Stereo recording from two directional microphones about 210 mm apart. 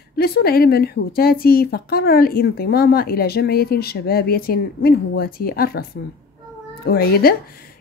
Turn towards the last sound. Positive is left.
turn(degrees=50)  # may be behind; listen again after turning